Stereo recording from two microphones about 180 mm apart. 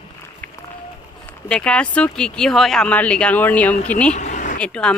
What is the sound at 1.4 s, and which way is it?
Speech, 5° left (ahead or behind).